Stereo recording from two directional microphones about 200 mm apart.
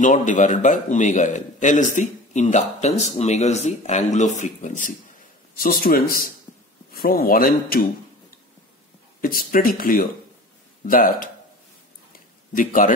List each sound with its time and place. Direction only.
0.0 s speech: 40° left (ahead or behind)
9.2 s speech: 45° left (ahead or behind)
12.1 s a sound: 40° left (ahead or behind)